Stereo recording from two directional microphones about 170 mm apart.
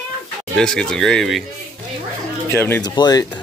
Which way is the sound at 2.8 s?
25° left (ahead or behind).